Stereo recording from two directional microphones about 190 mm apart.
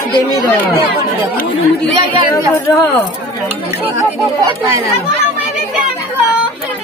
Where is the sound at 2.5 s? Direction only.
15° left (ahead or behind).